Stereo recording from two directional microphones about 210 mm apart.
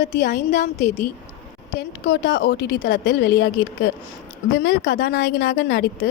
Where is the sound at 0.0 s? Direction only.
55° left (ahead or behind).